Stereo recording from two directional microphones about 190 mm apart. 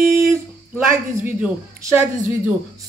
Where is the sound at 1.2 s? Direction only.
10° right (ahead or behind).